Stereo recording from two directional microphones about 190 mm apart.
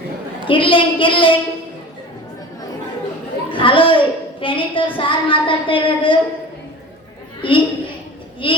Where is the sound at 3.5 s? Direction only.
25° left (ahead or behind).